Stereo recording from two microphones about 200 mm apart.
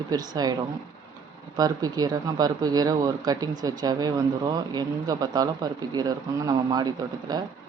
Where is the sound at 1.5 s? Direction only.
20° right (ahead or behind).